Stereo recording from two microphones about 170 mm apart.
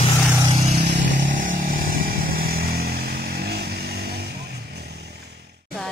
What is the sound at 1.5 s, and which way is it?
Vehicle, 55° right (ahead or behind).